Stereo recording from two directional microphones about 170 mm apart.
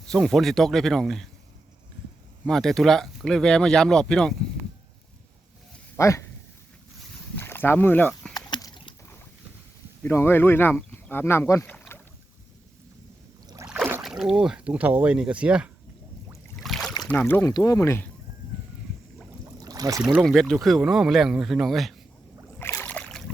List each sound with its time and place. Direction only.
0.1 s speech: centre (ahead or behind)
2.5 s speech: centre (ahead or behind)
6.0 s speech: 15° left (ahead or behind)
7.3 s speech: 15° left (ahead or behind)
8.4 s a sound: 25° left (ahead or behind)
10.0 s speech: 15° left (ahead or behind)
11.6 s rowboat: 10° left (ahead or behind)
14.0 s speech: 5° right (ahead or behind)
16.6 s boat: centre (ahead or behind)
17.0 s speech: 10° left (ahead or behind)
19.5 s a sound: 20° right (ahead or behind)
20.1 s speech: centre (ahead or behind)
22.5 s rowboat: 15° left (ahead or behind)